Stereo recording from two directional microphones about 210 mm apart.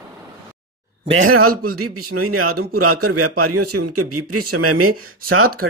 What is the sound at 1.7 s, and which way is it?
A man's voice, 90° right.